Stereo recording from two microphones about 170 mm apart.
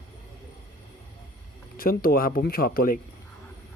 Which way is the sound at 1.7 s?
60° left (ahead or behind).